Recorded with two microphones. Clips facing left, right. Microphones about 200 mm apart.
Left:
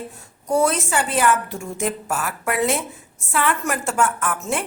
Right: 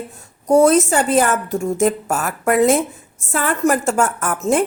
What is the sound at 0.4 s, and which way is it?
A woman's voice, 40° right (ahead or behind).